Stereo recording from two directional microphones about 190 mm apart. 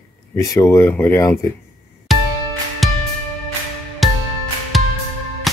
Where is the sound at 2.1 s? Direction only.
Centre (ahead or behind).